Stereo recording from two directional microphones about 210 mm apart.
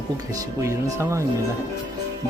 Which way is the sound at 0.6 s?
15° right (ahead or behind).